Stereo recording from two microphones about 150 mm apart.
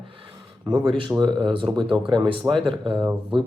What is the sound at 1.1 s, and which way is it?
Speech, 30° right (ahead or behind).